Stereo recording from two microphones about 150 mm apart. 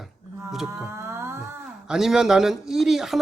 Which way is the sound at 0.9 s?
15° right (ahead or behind).